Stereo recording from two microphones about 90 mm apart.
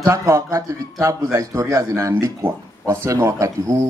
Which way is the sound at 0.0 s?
35° right (ahead or behind).